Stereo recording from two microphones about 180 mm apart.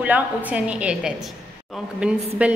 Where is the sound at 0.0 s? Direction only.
10° right (ahead or behind).